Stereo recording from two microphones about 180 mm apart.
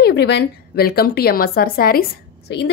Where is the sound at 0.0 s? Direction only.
65° left (ahead or behind).